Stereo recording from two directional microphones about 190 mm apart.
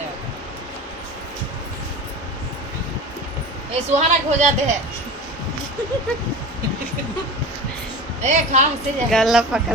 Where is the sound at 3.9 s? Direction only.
40° right (ahead or behind).